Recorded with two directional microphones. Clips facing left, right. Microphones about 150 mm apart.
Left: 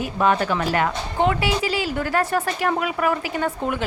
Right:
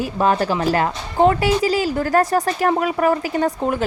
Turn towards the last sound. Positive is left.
turn(degrees=-35)  # may be behind; listen again after turning